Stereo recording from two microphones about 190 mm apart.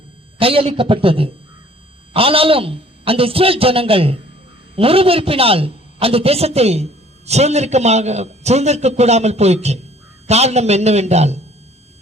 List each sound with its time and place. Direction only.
0.3 s a man's voice: 30° right (ahead or behind)